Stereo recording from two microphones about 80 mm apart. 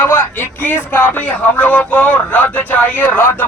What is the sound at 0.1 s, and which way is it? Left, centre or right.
Speech, left.